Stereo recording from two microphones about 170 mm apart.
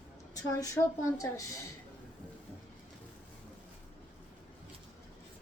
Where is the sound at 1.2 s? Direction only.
20° left (ahead or behind).